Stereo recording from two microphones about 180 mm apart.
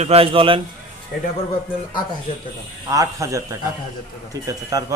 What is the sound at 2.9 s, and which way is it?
Speech, 15° right (ahead or behind).